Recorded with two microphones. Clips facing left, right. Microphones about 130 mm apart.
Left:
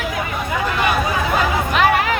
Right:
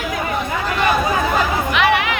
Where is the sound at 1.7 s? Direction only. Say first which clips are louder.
Left 1 dB; 40° left (ahead or behind).